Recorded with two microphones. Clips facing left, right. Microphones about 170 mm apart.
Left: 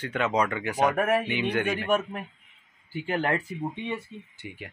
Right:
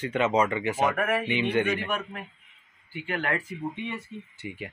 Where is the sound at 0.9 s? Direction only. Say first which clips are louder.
Left 3 dB; 40° left (ahead or behind).